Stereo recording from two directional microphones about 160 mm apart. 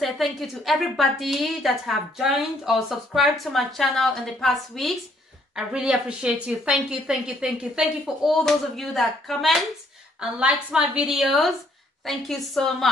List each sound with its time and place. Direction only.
0.0 s a woman's voice: centre (ahead or behind)